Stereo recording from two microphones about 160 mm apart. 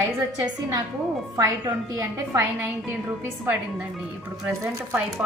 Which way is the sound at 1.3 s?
20° right (ahead or behind).